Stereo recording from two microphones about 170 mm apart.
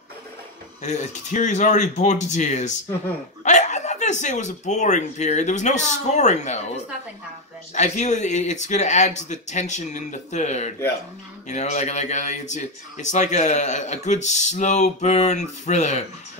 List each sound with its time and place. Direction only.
0.8 s speech: 45° left (ahead or behind)